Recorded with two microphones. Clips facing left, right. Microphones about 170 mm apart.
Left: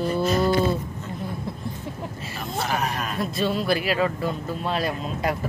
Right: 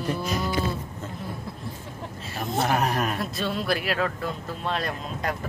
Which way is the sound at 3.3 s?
Centre (ahead or behind).